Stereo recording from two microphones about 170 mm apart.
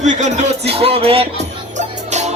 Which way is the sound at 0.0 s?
45° right (ahead or behind).